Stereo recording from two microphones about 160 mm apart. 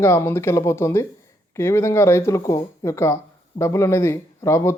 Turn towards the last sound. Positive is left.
turn(degrees=15)  # may be behind; listen again after turning